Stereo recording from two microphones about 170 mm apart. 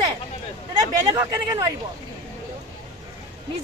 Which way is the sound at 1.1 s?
20° right (ahead or behind).